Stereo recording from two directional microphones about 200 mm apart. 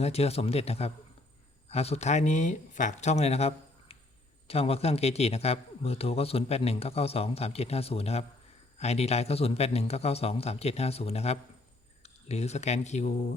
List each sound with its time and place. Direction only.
0.0 s a man's voice: 30° left (ahead or behind)